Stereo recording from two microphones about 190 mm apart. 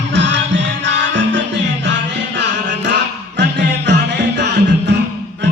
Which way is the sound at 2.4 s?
65° right (ahead or behind).